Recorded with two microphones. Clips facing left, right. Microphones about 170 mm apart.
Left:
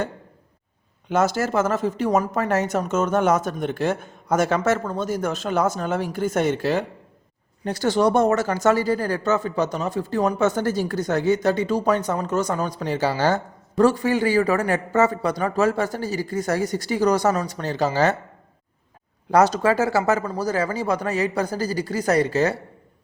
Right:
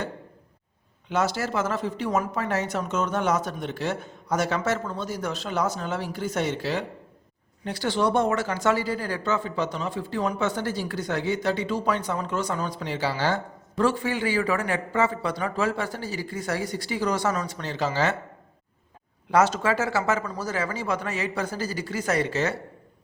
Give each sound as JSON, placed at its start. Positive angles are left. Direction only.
{"t": 1.1, "sound": "speech", "side_deg": 45}
{"t": 19.3, "sound": "speech", "side_deg": 40}